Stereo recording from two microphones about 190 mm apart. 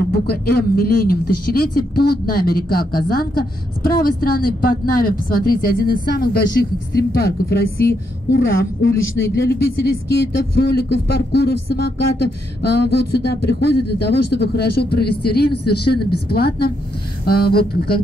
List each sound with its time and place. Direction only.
0.1 s speech: 55° left (ahead or behind)